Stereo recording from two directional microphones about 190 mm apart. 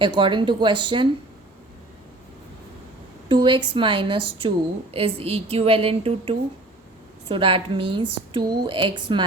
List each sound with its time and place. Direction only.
0.0 s a woman's voice: 25° right (ahead or behind)
3.2 s a woman's voice: 25° right (ahead or behind)